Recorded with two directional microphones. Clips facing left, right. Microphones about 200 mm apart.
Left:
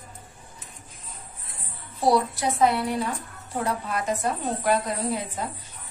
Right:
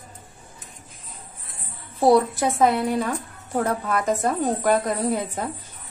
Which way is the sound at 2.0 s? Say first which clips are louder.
Right 5 dB; 50° right (ahead or behind).